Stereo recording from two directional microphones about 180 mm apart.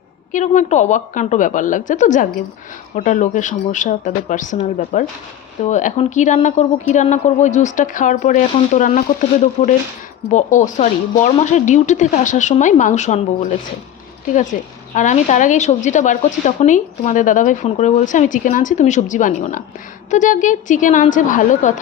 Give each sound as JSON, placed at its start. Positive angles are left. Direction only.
{"t": 0.3, "sound": "a woman's voice", "side_deg": 40}